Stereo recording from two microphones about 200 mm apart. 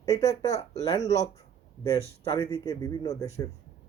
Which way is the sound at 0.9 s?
20° left (ahead or behind).